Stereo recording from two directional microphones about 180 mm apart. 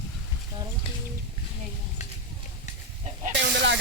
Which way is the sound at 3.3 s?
75° right (ahead or behind).